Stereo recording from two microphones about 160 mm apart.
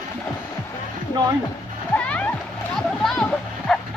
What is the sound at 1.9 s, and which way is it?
Music, 10° left (ahead or behind).